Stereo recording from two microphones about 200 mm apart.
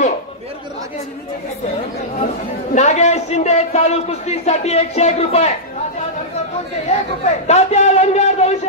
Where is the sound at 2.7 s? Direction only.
35° left (ahead or behind).